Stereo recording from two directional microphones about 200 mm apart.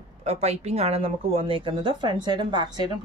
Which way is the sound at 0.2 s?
35° right (ahead or behind).